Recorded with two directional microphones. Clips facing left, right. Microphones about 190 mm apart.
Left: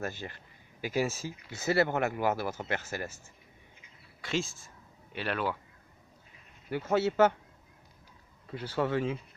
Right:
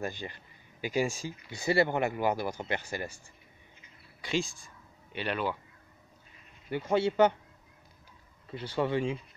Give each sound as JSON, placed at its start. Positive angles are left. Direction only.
{"t": 0.0, "sound": "speech", "side_deg": 5}
{"t": 4.2, "sound": "speech", "side_deg": 0}
{"t": 6.9, "sound": "speech", "side_deg": 5}
{"t": 8.5, "sound": "speech", "side_deg": 5}